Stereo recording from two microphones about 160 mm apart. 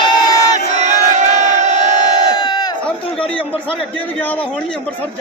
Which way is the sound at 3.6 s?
10° left (ahead or behind).